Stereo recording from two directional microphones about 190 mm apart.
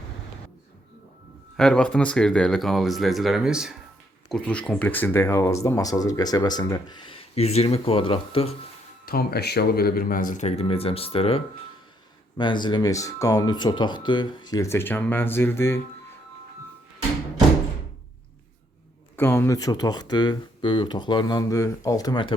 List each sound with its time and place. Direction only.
1.5 s speech: 5° left (ahead or behind); by 8.5 s 30° left (ahead or behind)
9.0 s speech: 55° left (ahead or behind); by 15.8 s 15° left (ahead or behind)
19.1 s speech: 10° left (ahead or behind)